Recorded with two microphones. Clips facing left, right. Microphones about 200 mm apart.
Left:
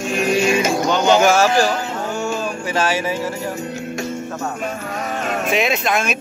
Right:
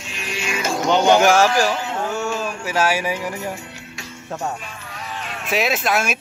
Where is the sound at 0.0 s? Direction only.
45° left (ahead or behind).